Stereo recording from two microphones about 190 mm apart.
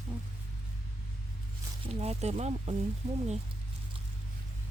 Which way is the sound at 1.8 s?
35° right (ahead or behind).